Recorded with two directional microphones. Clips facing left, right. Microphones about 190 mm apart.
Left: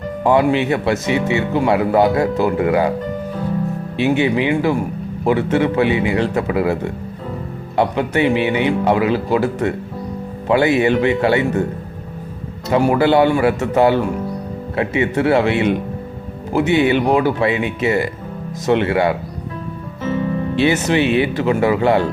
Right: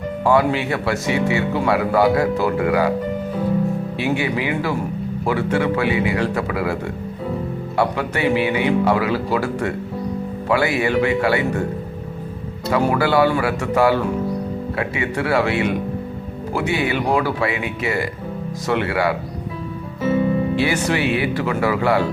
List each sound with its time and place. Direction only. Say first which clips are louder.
0.3 s speech: left 3 dB; 20° left (ahead or behind)
3.9 s speech: left 8 dB; 25° left (ahead or behind)
7.8 s speech: left 4 dB; 20° left (ahead or behind)
12.7 s speech: left 4 dB; 25° left (ahead or behind)
20.0 s music: right 2 dB; 10° right (ahead or behind)
20.6 s speech: left 4 dB; 25° left (ahead or behind)